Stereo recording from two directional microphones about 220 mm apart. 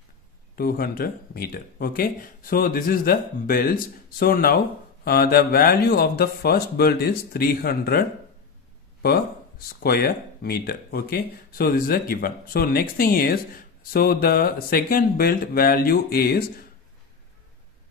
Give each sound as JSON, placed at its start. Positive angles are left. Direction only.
{"t": 0.6, "sound": "speech", "side_deg": 40}
{"t": 9.0, "sound": "speech", "side_deg": 45}